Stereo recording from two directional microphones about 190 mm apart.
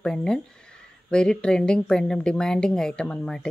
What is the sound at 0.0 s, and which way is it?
Speech, 5° left (ahead or behind).